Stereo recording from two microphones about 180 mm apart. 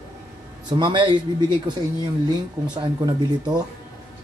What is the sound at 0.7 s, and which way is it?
Speech, 25° right (ahead or behind).